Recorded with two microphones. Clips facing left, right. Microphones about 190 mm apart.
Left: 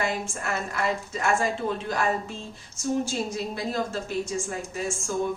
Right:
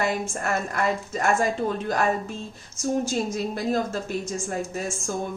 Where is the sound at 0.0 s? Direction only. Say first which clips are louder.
Right 3 dB; 45° right (ahead or behind).